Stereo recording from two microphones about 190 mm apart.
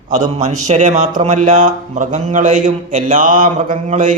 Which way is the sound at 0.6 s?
40° right (ahead or behind).